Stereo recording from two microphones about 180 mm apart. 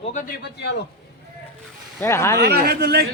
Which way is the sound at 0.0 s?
45° left (ahead or behind).